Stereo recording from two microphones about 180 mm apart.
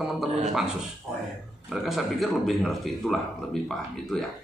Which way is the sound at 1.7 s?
Centre (ahead or behind).